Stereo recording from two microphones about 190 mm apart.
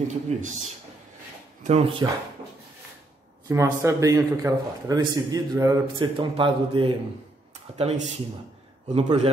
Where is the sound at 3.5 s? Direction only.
15° right (ahead or behind); by 8.0 s 30° right (ahead or behind).